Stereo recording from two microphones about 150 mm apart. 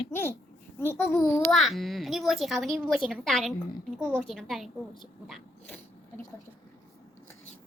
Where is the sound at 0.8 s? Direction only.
15° left (ahead or behind).